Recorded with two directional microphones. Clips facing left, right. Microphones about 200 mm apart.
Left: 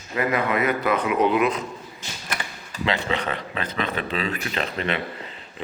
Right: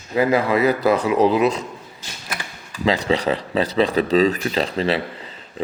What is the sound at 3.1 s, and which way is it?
Speech, 35° right (ahead or behind).